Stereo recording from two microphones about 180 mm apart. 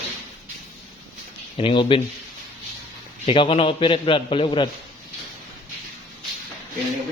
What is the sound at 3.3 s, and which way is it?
Speech, 30° left (ahead or behind).